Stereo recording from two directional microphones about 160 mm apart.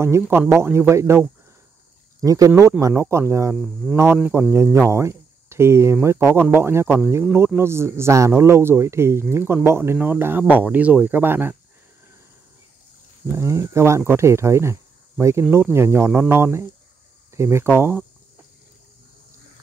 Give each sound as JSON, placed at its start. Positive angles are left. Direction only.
{"t": 0.0, "sound": "speech", "side_deg": -15}
{"t": 13.3, "sound": "speech", "side_deg": -20}